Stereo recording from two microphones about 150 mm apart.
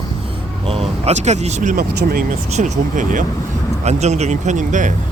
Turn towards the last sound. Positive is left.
turn(degrees=-55)  # may be behind; listen again after turning